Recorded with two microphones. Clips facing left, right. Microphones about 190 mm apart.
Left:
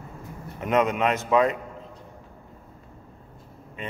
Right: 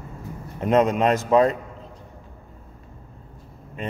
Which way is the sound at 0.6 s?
30° right (ahead or behind).